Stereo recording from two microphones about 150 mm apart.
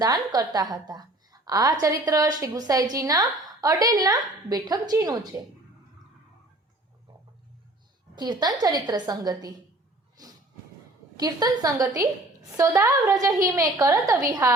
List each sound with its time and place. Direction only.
0.0 s a woman's voice: 25° right (ahead or behind)
8.1 s a woman's voice: 30° right (ahead or behind)
10.2 s a sound: 25° right (ahead or behind)
11.2 s a woman's voice: 25° right (ahead or behind)